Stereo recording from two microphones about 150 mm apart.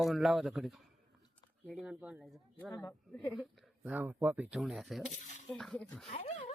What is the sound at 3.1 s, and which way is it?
Speech, 10° left (ahead or behind).